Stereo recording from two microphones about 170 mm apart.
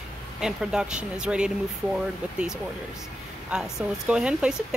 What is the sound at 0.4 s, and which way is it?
Speech, 5° right (ahead or behind).